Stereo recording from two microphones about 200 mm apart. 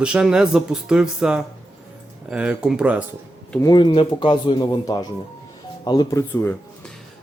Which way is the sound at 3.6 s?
20° left (ahead or behind).